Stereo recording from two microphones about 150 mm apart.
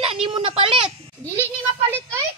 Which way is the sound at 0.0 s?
35° right (ahead or behind).